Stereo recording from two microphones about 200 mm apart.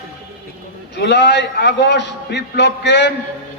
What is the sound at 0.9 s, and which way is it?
Mantra, 60° left (ahead or behind).